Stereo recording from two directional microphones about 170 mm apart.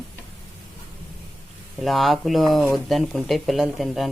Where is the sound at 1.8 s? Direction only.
Centre (ahead or behind).